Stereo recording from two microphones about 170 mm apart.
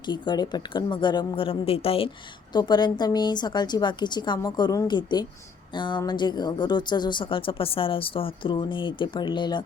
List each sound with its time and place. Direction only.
0.1 s speech: 25° left (ahead or behind)